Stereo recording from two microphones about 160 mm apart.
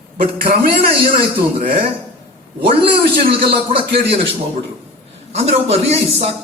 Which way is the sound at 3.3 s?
35° right (ahead or behind).